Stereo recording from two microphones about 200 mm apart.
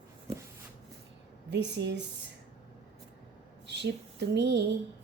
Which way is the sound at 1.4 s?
60° right (ahead or behind).